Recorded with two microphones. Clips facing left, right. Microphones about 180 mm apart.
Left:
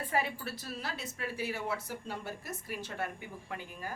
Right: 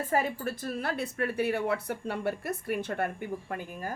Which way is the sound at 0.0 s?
45° right (ahead or behind).